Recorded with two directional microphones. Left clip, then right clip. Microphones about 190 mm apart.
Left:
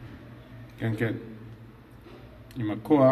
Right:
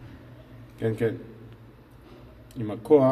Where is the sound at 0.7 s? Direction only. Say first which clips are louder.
Right 4 dB; 25° right (ahead or behind).